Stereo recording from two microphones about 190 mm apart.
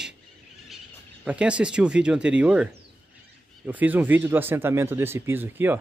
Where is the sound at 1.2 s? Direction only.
5° right (ahead or behind).